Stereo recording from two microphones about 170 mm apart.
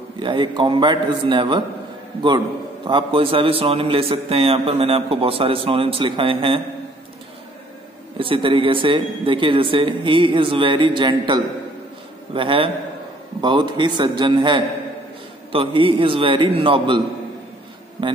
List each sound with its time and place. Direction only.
0.2 s a man's voice: 30° right (ahead or behind)
2.9 s a man's voice: 30° right (ahead or behind)
8.2 s a man's voice: 30° right (ahead or behind)